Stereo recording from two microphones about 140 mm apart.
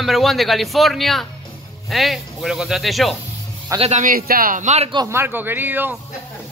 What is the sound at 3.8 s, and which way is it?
Speech, 50° right (ahead or behind).